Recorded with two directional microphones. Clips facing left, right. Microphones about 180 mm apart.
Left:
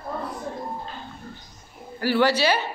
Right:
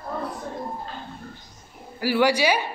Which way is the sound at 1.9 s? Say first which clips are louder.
Even; 10° right (ahead or behind).